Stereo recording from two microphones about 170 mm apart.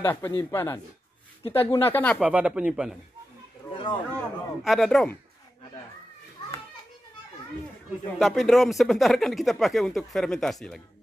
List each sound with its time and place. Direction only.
0.0 s speech: 15° left (ahead or behind)
2.1 s speech: 10° right (ahead or behind)
3.7 s a sound: 30° left (ahead or behind)
4.2 s a man's voice: centre (ahead or behind)
8.2 s speech: centre (ahead or behind)